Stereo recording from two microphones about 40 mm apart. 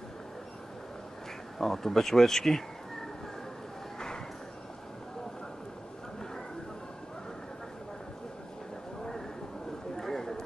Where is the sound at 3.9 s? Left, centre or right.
Centre.